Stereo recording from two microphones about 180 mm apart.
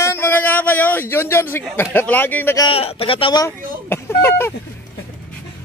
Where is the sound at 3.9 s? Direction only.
10° left (ahead or behind).